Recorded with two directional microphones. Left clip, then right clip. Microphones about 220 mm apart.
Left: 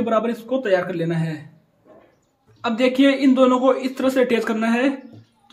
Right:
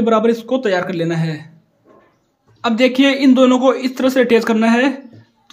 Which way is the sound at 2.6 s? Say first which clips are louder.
Right 4 dB; 30° right (ahead or behind).